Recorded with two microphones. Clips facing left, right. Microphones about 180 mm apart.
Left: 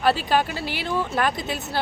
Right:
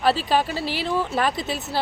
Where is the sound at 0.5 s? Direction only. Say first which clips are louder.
Right 3 dB; 30° right (ahead or behind).